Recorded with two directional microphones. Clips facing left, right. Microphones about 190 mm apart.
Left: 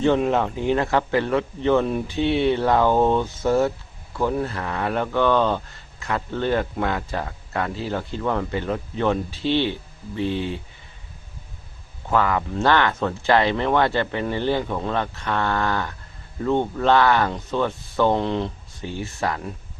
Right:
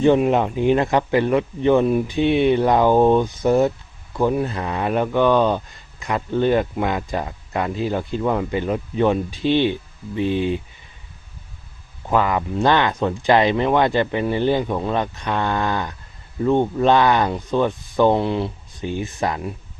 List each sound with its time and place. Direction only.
0.0 s speech: 15° right (ahead or behind)
12.0 s speech: 15° right (ahead or behind)